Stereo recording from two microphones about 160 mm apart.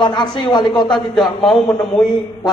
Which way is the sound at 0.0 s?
30° left (ahead or behind).